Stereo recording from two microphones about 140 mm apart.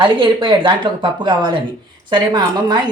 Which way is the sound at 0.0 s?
35° right (ahead or behind).